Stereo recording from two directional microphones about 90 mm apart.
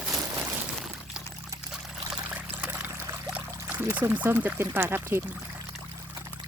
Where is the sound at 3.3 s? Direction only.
20° right (ahead or behind).